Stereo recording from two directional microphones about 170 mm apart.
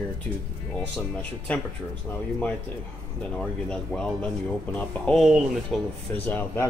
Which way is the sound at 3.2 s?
5° left (ahead or behind).